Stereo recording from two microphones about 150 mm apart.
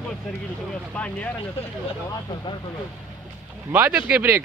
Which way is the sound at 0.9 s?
10° left (ahead or behind).